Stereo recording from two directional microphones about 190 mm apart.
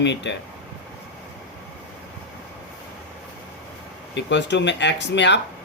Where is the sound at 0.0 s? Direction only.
70° left (ahead or behind).